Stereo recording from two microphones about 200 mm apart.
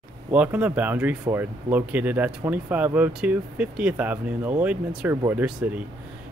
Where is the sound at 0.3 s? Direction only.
10° right (ahead or behind).